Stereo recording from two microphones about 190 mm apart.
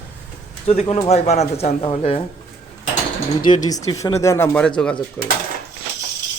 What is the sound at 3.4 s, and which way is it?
Speech, 20° left (ahead or behind).